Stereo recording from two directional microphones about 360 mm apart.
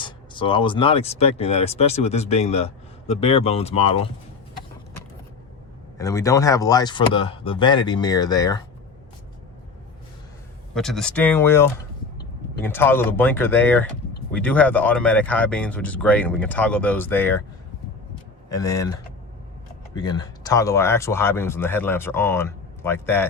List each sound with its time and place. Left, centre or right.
0.0 s speech: centre
6.0 s speech: centre
10.8 s speech: centre
18.4 s speech: centre